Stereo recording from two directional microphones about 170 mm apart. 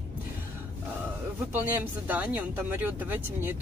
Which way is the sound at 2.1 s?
10° right (ahead or behind).